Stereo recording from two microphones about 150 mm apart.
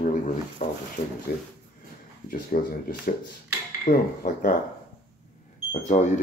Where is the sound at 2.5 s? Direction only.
70° left (ahead or behind).